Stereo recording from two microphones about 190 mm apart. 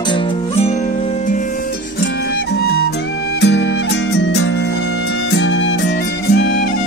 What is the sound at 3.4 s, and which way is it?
Music, 65° left (ahead or behind).